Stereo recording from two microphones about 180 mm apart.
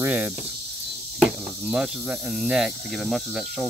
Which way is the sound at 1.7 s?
5° right (ahead or behind).